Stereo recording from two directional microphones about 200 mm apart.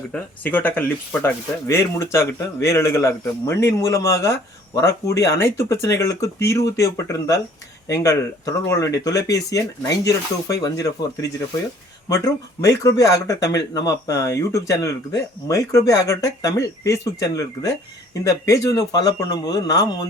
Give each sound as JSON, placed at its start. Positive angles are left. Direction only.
{"t": 0.1, "sound": "speech", "side_deg": 10}